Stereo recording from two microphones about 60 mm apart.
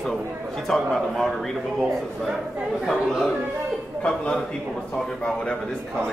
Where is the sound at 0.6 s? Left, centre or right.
Centre.